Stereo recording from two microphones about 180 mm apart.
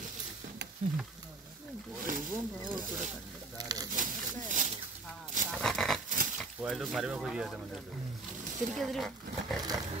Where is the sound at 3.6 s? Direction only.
20° right (ahead or behind).